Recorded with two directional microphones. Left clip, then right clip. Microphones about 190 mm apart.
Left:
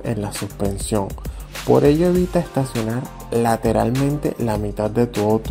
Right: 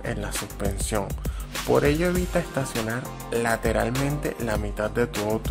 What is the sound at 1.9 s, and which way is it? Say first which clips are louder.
Speech: left 7 dB; 10° right (ahead or behind).